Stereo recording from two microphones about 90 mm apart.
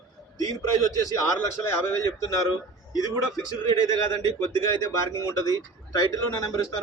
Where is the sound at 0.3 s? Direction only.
40° left (ahead or behind).